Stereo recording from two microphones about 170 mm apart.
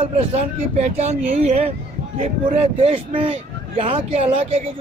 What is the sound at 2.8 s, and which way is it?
A man's voice, 35° right (ahead or behind).